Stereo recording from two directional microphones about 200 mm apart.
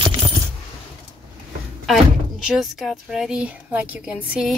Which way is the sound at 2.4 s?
Centre (ahead or behind).